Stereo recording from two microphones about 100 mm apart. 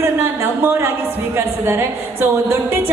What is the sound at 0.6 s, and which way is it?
Speech, 25° right (ahead or behind).